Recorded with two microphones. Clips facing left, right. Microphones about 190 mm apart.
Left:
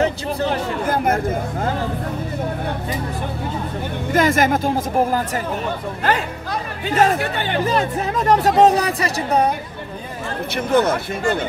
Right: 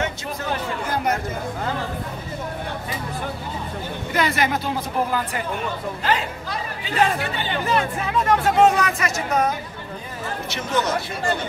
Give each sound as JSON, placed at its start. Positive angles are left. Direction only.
{"t": 0.0, "sound": "a sound", "side_deg": 30}
{"t": 0.8, "sound": "speech", "side_deg": 50}
{"t": 4.1, "sound": "speech", "side_deg": 45}
{"t": 6.8, "sound": "speech", "side_deg": 50}
{"t": 7.6, "sound": "speech", "side_deg": 40}
{"t": 10.5, "sound": "speech", "side_deg": 55}